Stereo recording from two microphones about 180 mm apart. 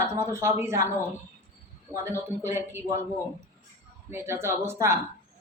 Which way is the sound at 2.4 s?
15° right (ahead or behind).